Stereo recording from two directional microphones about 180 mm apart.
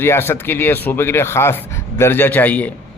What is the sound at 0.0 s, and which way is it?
A man's voice, 15° left (ahead or behind).